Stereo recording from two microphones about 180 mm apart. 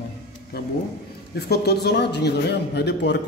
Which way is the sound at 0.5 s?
60° left (ahead or behind).